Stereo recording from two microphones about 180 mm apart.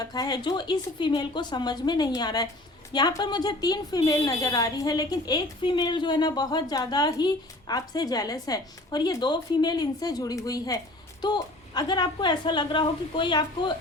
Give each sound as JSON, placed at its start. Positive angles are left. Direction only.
{"t": 0.0, "sound": "a woman's voice", "side_deg": 20}